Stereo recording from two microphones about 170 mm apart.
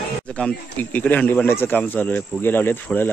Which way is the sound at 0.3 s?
5° left (ahead or behind).